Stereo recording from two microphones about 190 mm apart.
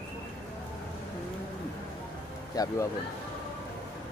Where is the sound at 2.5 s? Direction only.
20° left (ahead or behind).